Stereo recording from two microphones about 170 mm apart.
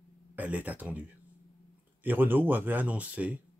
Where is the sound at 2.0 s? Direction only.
10° right (ahead or behind).